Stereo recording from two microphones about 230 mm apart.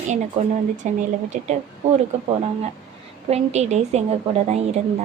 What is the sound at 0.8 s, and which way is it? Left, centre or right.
Speech, right.